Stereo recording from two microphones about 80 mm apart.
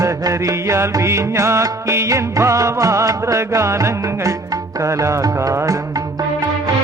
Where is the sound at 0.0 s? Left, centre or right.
Right.